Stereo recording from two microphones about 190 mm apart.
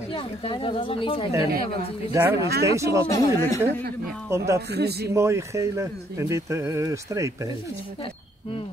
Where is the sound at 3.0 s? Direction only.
15° left (ahead or behind).